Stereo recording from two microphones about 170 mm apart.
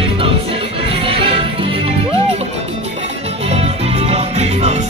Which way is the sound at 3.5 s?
40° right (ahead or behind).